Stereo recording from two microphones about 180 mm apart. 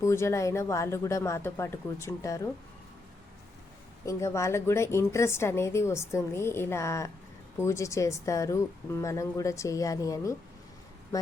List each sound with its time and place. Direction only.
0.0 s a woman's voice: 15° left (ahead or behind)
4.0 s a woman's voice: 15° left (ahead or behind)